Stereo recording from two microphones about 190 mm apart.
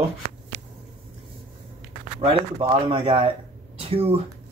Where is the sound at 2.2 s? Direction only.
30° right (ahead or behind).